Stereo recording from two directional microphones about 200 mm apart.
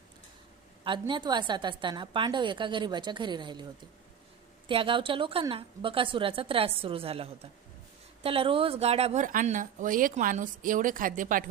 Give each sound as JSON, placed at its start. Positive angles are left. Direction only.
{"t": 0.9, "sound": "a woman's voice", "side_deg": -25}
{"t": 4.7, "sound": "a woman's voice", "side_deg": -25}